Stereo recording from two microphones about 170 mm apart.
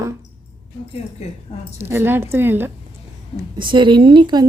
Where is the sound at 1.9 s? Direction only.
15° right (ahead or behind).